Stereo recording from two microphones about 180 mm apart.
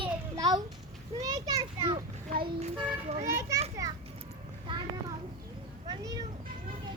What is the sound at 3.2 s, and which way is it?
Speech, 15° right (ahead or behind).